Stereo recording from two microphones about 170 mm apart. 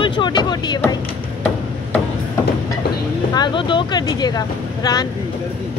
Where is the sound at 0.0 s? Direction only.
30° left (ahead or behind).